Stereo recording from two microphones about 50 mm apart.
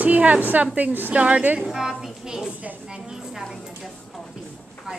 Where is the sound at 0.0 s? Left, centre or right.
Right.